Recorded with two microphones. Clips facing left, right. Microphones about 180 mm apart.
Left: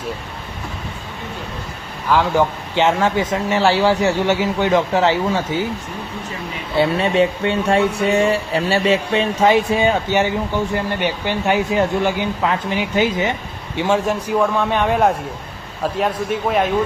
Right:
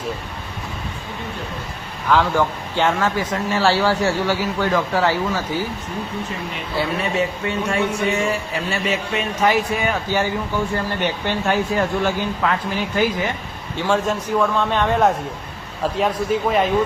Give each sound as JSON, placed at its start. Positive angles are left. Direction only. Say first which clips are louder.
{"t": 2.0, "sound": "speech", "louder": "left 2 dB", "side_deg": 15}
{"t": 6.7, "sound": "a man's voice", "louder": "left 6 dB", "side_deg": 25}